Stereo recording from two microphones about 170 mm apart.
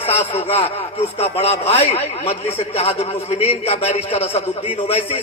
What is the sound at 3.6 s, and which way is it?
Speech, 35° left (ahead or behind).